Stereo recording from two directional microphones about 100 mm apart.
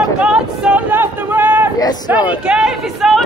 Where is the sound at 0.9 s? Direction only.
20° right (ahead or behind).